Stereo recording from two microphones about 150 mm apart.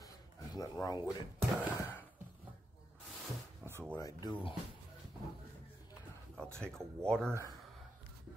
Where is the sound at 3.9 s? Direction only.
25° left (ahead or behind).